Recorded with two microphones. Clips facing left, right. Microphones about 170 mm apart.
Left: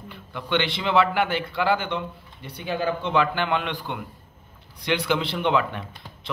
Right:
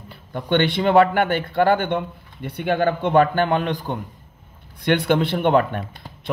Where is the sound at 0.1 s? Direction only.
45° right (ahead or behind).